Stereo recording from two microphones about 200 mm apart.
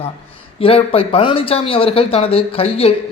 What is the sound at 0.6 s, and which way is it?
Speech, 30° left (ahead or behind).